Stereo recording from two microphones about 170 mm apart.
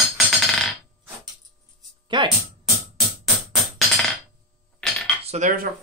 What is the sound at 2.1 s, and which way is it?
Music, 25° right (ahead or behind).